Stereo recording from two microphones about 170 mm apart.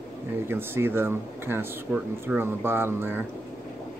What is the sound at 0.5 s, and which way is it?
Speech, 15° right (ahead or behind).